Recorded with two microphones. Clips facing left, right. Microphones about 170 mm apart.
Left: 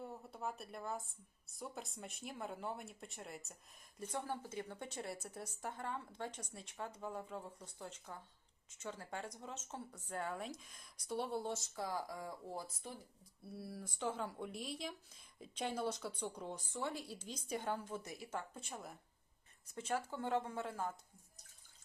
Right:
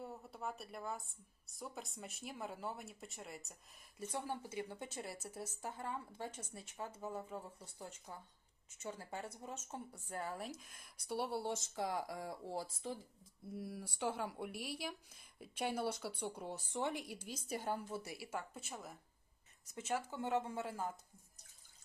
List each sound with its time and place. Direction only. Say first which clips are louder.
0.0 s a woman's voice: left 1 dB; centre (ahead or behind)
4.1 s a woman's voice: even; 10° right (ahead or behind); by 12.7 s 30° right (ahead or behind)
13.4 s speech: right 2 dB; 15° right (ahead or behind)